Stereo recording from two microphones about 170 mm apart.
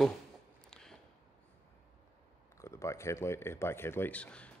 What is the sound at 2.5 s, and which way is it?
Speech, 15° left (ahead or behind).